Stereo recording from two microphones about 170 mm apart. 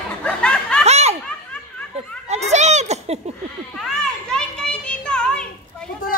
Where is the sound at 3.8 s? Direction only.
5° left (ahead or behind).